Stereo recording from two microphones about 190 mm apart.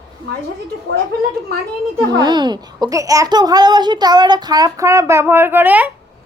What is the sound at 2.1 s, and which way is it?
A child's voice, 25° right (ahead or behind).